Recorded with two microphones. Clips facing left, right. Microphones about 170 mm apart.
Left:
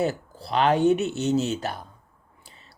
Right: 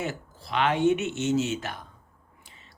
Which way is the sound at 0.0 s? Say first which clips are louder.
Left 7 dB; 35° left (ahead or behind).